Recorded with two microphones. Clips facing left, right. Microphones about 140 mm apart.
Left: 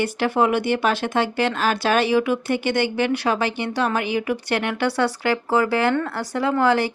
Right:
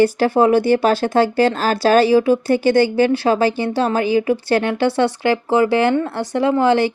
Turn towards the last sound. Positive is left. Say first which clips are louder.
# right 4 dB
turn(degrees=-25)  # may be behind; listen again after turning